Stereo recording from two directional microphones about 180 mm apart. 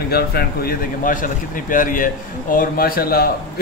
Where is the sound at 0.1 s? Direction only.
60° left (ahead or behind).